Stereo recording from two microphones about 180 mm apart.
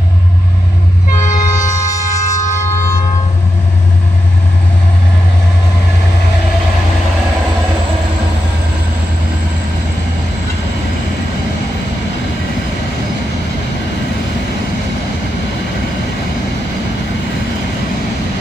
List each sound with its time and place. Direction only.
1.3 s train: 45° left (ahead or behind)
1.8 s music: 15° left (ahead or behind)